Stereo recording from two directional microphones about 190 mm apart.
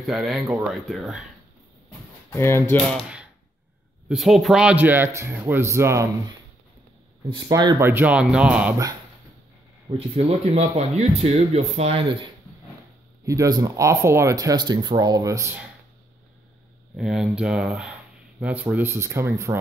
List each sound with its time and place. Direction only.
0.0 s speech: centre (ahead or behind)
2.3 s speech: 10° left (ahead or behind)
4.1 s speech: centre (ahead or behind)
7.2 s speech: 20° right (ahead or behind)
9.8 s speech: 30° right (ahead or behind)
13.2 s speech: 15° right (ahead or behind)
16.9 s speech: 5° right (ahead or behind)